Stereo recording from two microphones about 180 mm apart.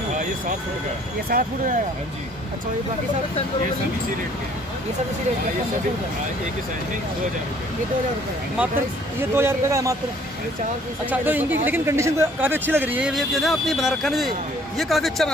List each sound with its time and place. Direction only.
1.3 s speech: 55° right (ahead or behind)
9.2 s speech: 15° right (ahead or behind)
11.1 s speech: 10° right (ahead or behind)